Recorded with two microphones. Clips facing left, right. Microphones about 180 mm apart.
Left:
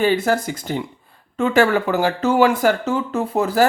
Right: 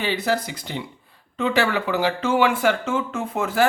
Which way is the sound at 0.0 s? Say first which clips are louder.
Left 6 dB; 45° left (ahead or behind).